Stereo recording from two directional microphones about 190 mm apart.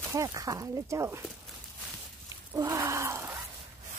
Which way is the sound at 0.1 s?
15° right (ahead or behind).